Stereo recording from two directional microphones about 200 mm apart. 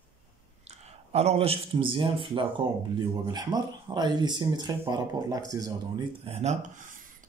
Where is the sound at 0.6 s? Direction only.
35° right (ahead or behind).